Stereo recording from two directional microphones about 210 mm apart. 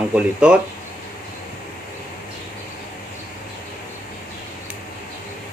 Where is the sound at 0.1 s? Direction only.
5° right (ahead or behind).